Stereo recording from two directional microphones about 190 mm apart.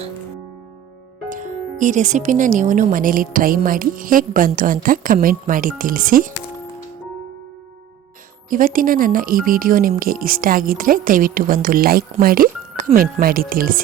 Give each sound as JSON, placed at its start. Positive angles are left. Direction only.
{"t": 1.3, "sound": "speech", "side_deg": -45}
{"t": 8.4, "sound": "speech", "side_deg": -45}